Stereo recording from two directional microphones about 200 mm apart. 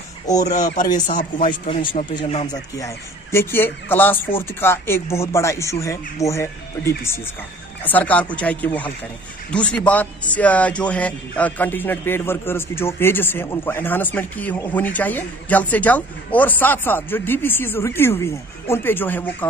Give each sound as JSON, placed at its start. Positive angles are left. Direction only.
{"t": 1.0, "sound": "speech", "side_deg": 40}
{"t": 1.7, "sound": "speech", "side_deg": 25}
{"t": 2.8, "sound": "a man's voice", "side_deg": 15}